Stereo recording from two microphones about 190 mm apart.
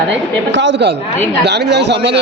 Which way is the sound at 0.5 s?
70° right (ahead or behind).